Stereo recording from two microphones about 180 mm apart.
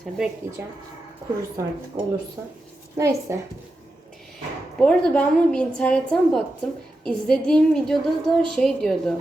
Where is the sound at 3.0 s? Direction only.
15° right (ahead or behind).